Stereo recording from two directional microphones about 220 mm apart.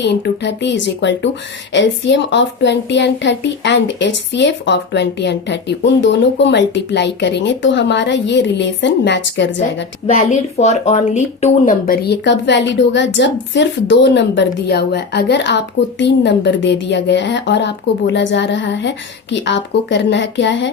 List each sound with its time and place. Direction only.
0.0 s speech: 50° left (ahead or behind)
10.6 s speech: 30° left (ahead or behind); by 20.7 s 55° left (ahead or behind)